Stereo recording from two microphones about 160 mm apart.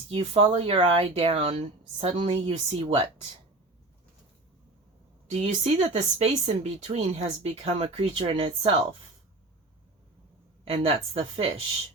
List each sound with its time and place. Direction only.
0.1 s speech: 35° right (ahead or behind)
5.4 s speech: 45° right (ahead or behind)
10.7 s speech: 40° right (ahead or behind)